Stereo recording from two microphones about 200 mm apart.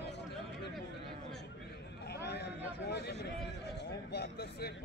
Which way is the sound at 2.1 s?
55° left (ahead or behind).